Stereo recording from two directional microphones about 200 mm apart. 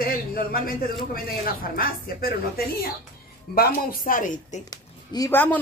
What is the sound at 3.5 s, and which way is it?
Speech, 45° left (ahead or behind).